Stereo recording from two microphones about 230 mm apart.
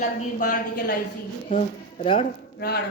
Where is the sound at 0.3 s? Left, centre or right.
Left.